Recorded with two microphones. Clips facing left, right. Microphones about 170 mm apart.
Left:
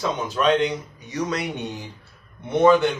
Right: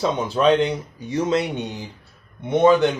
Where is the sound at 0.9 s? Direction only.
30° right (ahead or behind).